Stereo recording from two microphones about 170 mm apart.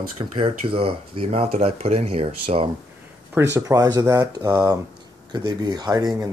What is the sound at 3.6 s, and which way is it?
Speech, 20° right (ahead or behind).